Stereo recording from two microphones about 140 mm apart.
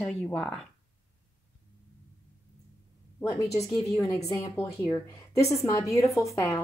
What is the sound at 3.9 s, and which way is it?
A woman's voice, 25° left (ahead or behind).